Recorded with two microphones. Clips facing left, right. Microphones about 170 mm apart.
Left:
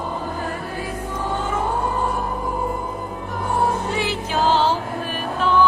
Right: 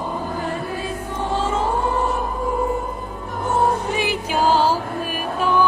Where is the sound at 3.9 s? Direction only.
15° right (ahead or behind).